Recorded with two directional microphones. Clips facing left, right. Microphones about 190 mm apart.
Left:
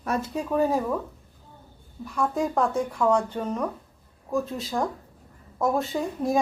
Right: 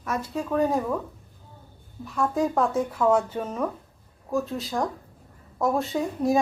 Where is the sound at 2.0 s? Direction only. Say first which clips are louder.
Right 1 dB; centre (ahead or behind).